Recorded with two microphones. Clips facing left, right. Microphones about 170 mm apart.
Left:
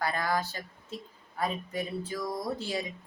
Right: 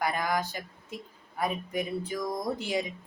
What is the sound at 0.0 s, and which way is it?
Speech, 15° right (ahead or behind).